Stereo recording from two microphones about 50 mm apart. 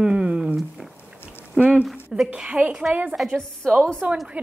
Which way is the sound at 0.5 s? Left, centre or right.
Centre.